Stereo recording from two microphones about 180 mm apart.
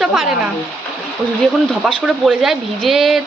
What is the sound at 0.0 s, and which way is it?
Speech, centre (ahead or behind).